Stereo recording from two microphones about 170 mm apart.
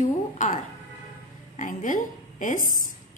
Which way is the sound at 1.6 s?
50° left (ahead or behind).